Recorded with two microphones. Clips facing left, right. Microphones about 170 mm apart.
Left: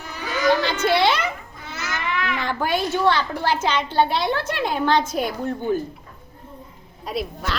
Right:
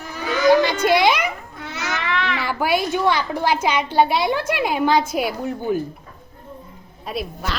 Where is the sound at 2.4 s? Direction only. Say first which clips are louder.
Right 2 dB; 10° right (ahead or behind).